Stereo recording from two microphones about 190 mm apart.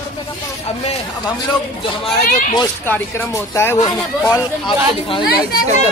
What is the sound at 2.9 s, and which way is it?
Speech, 15° left (ahead or behind).